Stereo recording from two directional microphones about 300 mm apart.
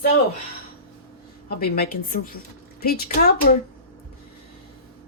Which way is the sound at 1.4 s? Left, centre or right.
Left.